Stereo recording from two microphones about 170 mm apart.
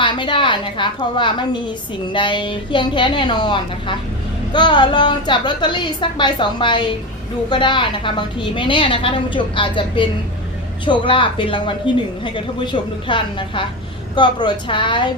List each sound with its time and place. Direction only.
0.0 s a woman's voice: 30° left (ahead or behind)